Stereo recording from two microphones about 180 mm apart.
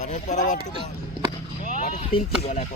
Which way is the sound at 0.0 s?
45° left (ahead or behind).